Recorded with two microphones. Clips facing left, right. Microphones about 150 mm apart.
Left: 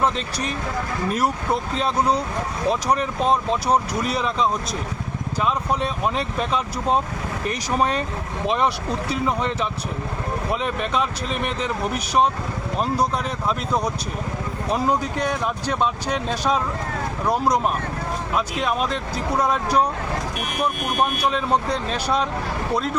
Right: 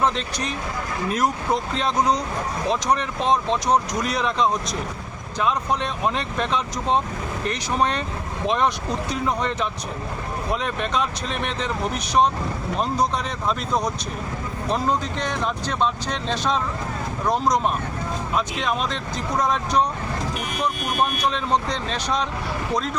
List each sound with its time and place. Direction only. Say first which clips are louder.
0.0 s speech: even; 5° left (ahead or behind)
13.5 s speech: even; 5° left (ahead or behind)
21.1 s speech: left 1 dB; 10° left (ahead or behind)